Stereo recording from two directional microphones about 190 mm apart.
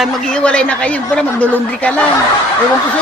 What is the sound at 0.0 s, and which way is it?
A woman's voice, 5° left (ahead or behind).